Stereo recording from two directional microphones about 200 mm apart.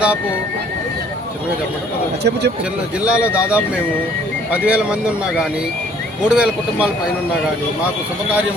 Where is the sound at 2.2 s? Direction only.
55° right (ahead or behind).